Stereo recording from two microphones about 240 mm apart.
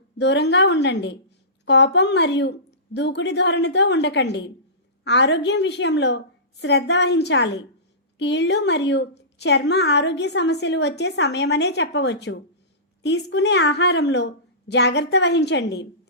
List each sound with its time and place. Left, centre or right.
0.2 s a woman's voice: left